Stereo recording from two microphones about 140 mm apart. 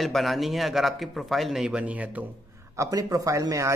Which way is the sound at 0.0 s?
Centre (ahead or behind).